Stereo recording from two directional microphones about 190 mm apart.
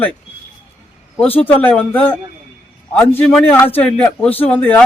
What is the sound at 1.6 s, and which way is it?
Speech, 10° left (ahead or behind).